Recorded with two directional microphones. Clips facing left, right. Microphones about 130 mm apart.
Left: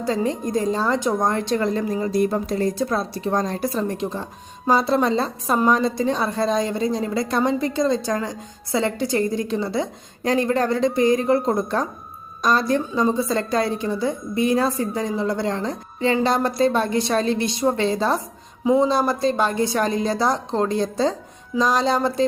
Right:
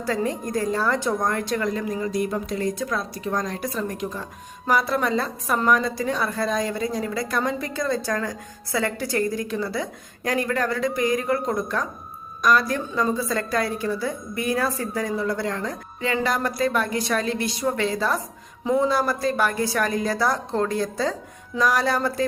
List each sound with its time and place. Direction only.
0.0 s a woman's voice: 20° left (ahead or behind)